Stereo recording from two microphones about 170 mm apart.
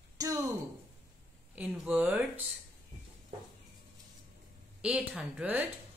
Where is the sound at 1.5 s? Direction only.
5° right (ahead or behind).